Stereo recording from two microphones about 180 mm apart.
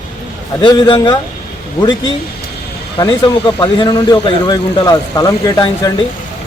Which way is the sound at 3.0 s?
25° left (ahead or behind).